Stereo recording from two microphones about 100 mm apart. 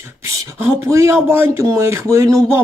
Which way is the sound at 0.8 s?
30° right (ahead or behind).